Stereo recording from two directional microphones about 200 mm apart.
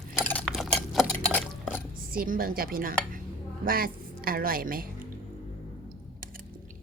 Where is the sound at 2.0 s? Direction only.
45° right (ahead or behind).